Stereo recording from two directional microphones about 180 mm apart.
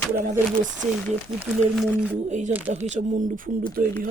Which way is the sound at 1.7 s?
Centre (ahead or behind).